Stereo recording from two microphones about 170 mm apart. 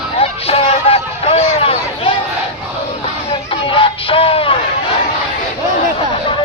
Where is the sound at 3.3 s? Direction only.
30° left (ahead or behind).